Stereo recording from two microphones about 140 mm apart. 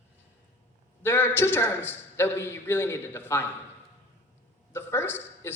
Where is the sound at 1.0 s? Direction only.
15° left (ahead or behind).